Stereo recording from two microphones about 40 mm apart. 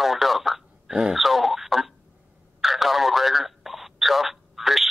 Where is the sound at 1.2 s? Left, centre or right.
Centre.